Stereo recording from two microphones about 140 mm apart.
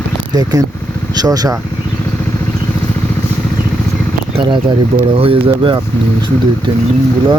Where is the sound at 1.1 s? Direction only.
25° right (ahead or behind).